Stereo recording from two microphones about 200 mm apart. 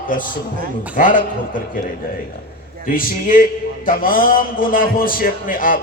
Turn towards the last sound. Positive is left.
turn(degrees=45)  # may be behind; listen again after turning